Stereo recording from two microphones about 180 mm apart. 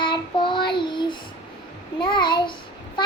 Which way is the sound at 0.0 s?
25° left (ahead or behind).